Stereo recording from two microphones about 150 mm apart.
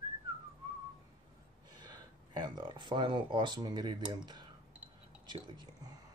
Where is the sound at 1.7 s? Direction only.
30° right (ahead or behind).